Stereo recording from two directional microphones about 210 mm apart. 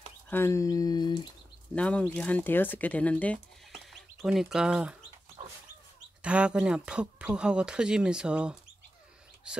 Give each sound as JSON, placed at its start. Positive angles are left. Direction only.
{"t": 0.3, "sound": "speech", "side_deg": 10}
{"t": 1.8, "sound": "speech", "side_deg": 5}
{"t": 6.2, "sound": "speech", "side_deg": -5}